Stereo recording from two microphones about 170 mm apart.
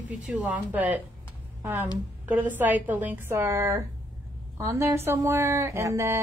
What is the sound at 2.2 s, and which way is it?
A woman's voice, 10° right (ahead or behind).